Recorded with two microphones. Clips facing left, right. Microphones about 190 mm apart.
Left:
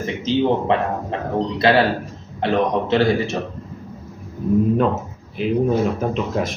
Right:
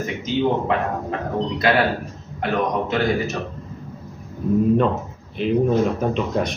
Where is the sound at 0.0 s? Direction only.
25° left (ahead or behind).